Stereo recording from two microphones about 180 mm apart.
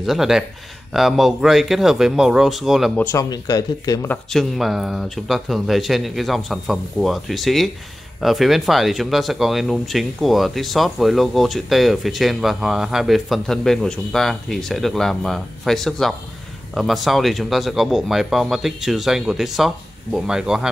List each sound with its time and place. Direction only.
0.0 s speech: centre (ahead or behind)
3.0 s speech: 15° left (ahead or behind)
4.1 s speech: centre (ahead or behind)